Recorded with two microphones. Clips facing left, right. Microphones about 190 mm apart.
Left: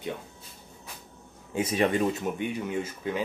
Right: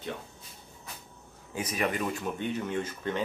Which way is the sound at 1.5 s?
25° left (ahead or behind).